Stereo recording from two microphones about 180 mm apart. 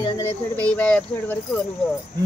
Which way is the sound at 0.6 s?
5° left (ahead or behind).